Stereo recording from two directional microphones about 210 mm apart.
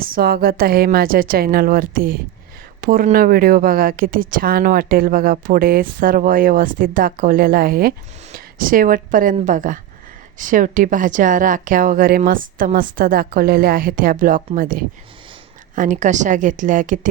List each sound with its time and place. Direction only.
0.0 s a woman's voice: 45° right (ahead or behind)